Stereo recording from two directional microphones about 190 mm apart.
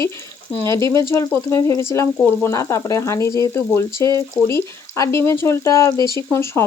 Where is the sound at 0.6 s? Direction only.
15° left (ahead or behind).